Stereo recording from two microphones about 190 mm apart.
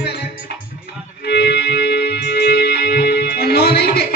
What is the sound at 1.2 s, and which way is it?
Music, 60° left (ahead or behind).